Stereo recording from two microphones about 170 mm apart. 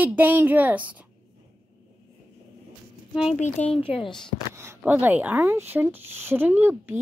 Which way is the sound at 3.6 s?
45° left (ahead or behind).